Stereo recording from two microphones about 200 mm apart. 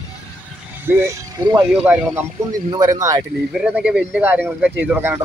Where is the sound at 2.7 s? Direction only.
20° right (ahead or behind).